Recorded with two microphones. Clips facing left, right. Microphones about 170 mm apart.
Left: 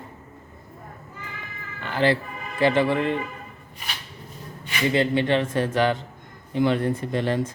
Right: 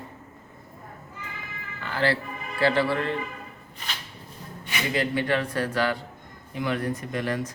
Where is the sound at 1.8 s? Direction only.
20° left (ahead or behind).